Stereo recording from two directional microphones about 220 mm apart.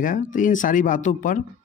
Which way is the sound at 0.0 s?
35° left (ahead or behind).